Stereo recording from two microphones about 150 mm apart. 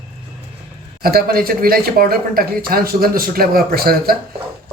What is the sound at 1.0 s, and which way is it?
Speech, 85° right.